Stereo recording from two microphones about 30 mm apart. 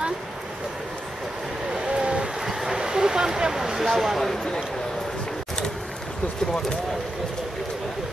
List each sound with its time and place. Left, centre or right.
1.7 s vehicle: right
2.4 s a sound: centre
3.8 s speech: centre